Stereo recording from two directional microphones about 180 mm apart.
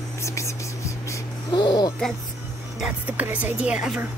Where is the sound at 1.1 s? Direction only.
25° left (ahead or behind).